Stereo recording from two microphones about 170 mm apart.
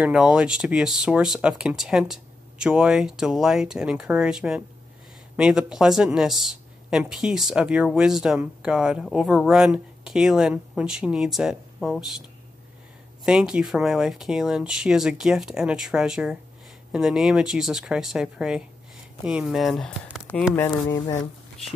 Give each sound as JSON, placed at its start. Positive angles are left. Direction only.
{"t": 0.0, "sound": "speech", "side_deg": -5}
{"t": 13.2, "sound": "speech", "side_deg": -5}
{"t": 20.5, "sound": "speech", "side_deg": 20}